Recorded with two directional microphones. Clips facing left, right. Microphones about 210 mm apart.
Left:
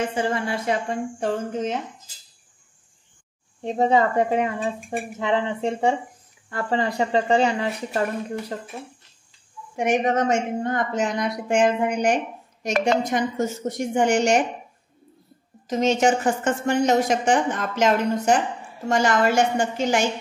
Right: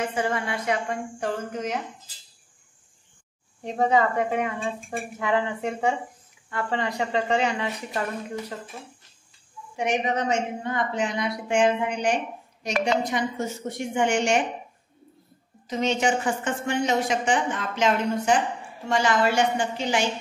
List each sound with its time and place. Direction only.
0.1 s speech: 30° left (ahead or behind)
3.6 s a woman's voice: 25° left (ahead or behind)
9.8 s a woman's voice: 50° left (ahead or behind)
15.6 s a woman's voice: 45° left (ahead or behind)